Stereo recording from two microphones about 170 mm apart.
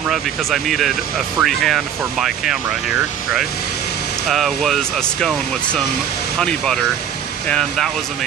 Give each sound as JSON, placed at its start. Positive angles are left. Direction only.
{"t": 0.1, "sound": "speech", "side_deg": 0}
{"t": 4.3, "sound": "speech", "side_deg": 0}